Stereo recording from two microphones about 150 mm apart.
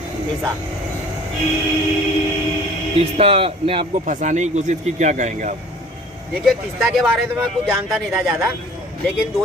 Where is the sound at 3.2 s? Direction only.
40° right (ahead or behind).